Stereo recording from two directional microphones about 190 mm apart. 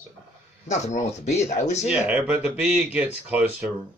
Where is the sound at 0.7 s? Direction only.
40° left (ahead or behind).